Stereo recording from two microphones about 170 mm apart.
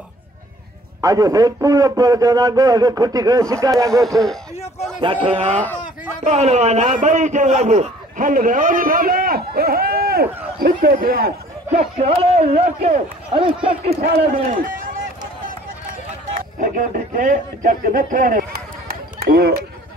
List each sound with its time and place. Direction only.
1.0 s a man's voice: 20° right (ahead or behind)
4.0 s speech: centre (ahead or behind)
5.0 s speech: 30° right (ahead or behind)
5.5 s speech: 10° left (ahead or behind)
6.2 s a man's voice: 40° right (ahead or behind); by 11.3 s 60° right (ahead or behind)
11.7 s speech: 35° right (ahead or behind)
14.0 s a man's voice: 60° right (ahead or behind)
14.6 s run: 55° right (ahead or behind)
16.3 s speech: 55° right (ahead or behind)